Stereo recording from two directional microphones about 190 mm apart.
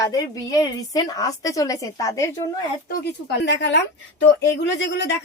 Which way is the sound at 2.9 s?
60° left (ahead or behind).